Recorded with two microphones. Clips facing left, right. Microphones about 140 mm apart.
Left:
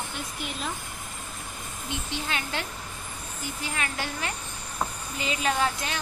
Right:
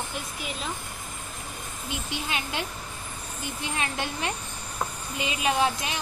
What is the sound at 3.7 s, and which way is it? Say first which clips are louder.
Speech: right 2 dB; 25° right (ahead or behind).